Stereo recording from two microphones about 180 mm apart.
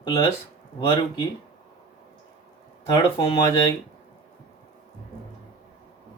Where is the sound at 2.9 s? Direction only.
30° left (ahead or behind).